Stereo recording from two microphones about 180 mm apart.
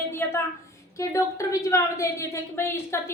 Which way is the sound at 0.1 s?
15° left (ahead or behind).